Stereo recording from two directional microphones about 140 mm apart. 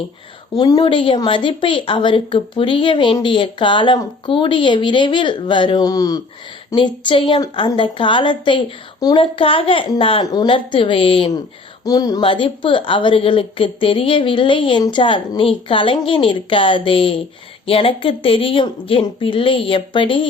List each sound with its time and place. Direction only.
0.6 s a woman's voice: 35° left (ahead or behind)
11.9 s speech: 25° left (ahead or behind)
12.2 s a woman's voice: 35° left (ahead or behind)